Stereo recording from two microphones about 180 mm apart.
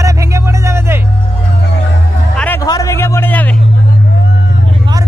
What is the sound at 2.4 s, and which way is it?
Music, 10° left (ahead or behind).